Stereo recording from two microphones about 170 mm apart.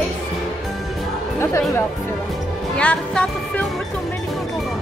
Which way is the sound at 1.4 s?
15° left (ahead or behind).